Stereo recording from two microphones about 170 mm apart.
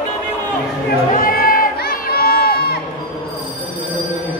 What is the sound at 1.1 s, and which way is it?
Crowd, 60° left (ahead or behind).